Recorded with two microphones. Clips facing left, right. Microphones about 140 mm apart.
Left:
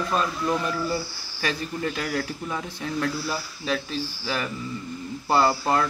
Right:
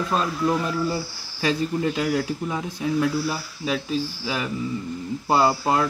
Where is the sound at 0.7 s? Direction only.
20° right (ahead or behind).